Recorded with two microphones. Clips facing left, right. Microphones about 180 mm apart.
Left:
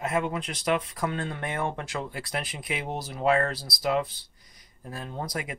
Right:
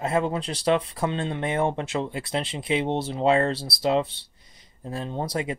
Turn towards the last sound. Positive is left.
turn(degrees=-30)  # may be behind; listen again after turning